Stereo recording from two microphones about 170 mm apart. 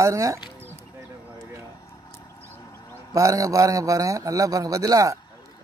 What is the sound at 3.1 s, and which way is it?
A man's voice, 20° right (ahead or behind).